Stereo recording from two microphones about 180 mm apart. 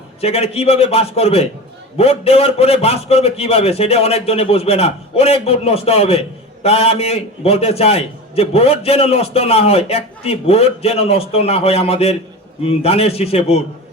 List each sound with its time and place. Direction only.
0.2 s a man's voice: 35° left (ahead or behind)